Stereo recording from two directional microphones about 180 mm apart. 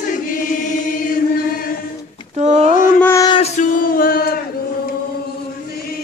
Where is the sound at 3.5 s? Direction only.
45° left (ahead or behind).